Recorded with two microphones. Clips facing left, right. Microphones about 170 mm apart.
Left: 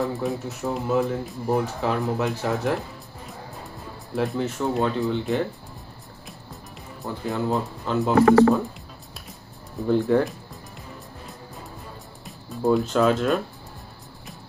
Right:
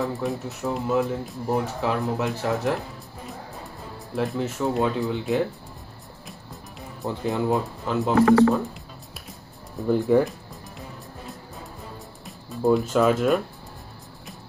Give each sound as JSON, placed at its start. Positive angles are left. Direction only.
{"t": 0.0, "sound": "speech", "side_deg": 0}
{"t": 4.1, "sound": "speech", "side_deg": 0}
{"t": 6.2, "sound": "music", "side_deg": 0}
{"t": 7.2, "sound": "speech", "side_deg": -20}
{"t": 7.8, "sound": "speech", "side_deg": 0}
{"t": 9.8, "sound": "speech", "side_deg": -5}
{"t": 12.3, "sound": "speech", "side_deg": 0}